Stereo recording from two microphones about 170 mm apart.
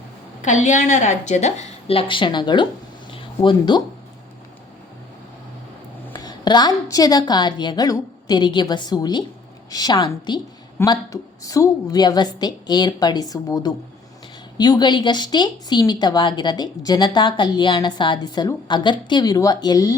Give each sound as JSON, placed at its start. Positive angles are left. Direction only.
{"t": 0.4, "sound": "a woman's voice", "side_deg": 45}
{"t": 6.1, "sound": "a woman's voice", "side_deg": 25}